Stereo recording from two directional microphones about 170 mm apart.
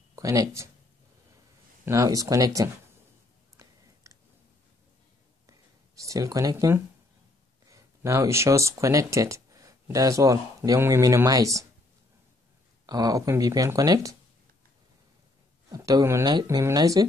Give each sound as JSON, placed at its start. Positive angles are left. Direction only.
{"t": 0.1, "sound": "speech", "side_deg": -20}
{"t": 1.9, "sound": "speech", "side_deg": -20}
{"t": 3.5, "sound": "chewing", "side_deg": -20}
{"t": 5.5, "sound": "a sound", "side_deg": -20}
{"t": 7.7, "sound": "speech", "side_deg": -15}
{"t": 12.8, "sound": "speech", "side_deg": -20}
{"t": 15.7, "sound": "speech", "side_deg": -20}